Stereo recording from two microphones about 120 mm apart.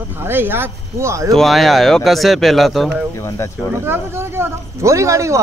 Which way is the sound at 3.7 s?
20° right (ahead or behind).